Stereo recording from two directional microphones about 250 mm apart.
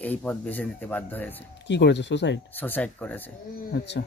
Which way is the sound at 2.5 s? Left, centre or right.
Centre.